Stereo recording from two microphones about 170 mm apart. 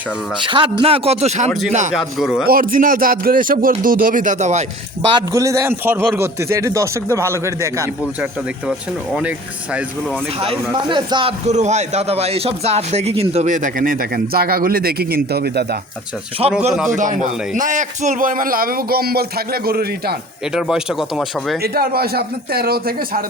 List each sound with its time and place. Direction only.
0.4 s speech: 30° right (ahead or behind)
1.9 s speech: centre (ahead or behind)
2.5 s a man's voice: 55° right (ahead or behind)
5.0 s a man's voice: 25° right (ahead or behind)
10.4 s a man's voice: 30° right (ahead or behind); by 15.6 s 70° right (ahead or behind)
16.4 s speech: 35° right (ahead or behind)
16.9 s a man's voice: 45° right (ahead or behind); by 20.1 s 65° right (ahead or behind)
20.5 s speech: 5° right (ahead or behind)
21.6 s speech: 65° right (ahead or behind)